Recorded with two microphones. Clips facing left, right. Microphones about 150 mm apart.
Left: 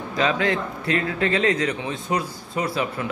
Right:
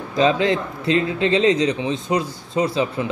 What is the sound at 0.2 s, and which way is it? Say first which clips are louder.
A man's voice: right 5 dB; 25° right (ahead or behind).